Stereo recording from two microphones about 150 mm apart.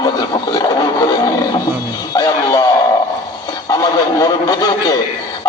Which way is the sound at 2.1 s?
25° left (ahead or behind).